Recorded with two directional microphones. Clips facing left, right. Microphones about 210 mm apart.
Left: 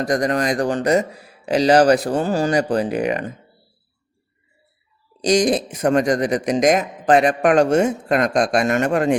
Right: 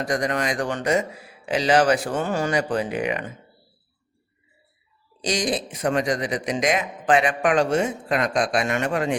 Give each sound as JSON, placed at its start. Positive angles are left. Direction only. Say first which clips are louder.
{"t": 0.0, "sound": "speech", "louder": "left 5 dB", "side_deg": 40}
{"t": 5.2, "sound": "a man's voice", "louder": "left 8 dB", "side_deg": 45}